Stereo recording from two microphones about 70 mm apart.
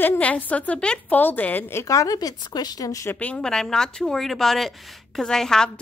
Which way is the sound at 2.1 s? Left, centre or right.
Left.